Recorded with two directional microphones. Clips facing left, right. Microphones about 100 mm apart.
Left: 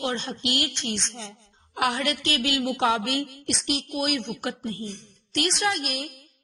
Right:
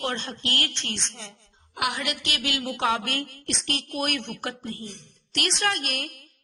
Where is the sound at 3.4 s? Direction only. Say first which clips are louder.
Left 3 dB; 5° left (ahead or behind).